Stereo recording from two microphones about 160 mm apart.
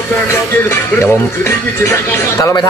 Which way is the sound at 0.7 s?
15° left (ahead or behind).